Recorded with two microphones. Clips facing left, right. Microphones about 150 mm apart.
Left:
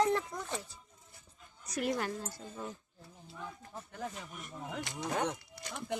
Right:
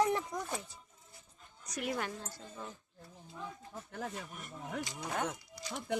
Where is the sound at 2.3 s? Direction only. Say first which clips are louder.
Left 3 dB; 15° left (ahead or behind).